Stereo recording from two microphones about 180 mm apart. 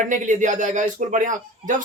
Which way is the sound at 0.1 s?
45° right (ahead or behind).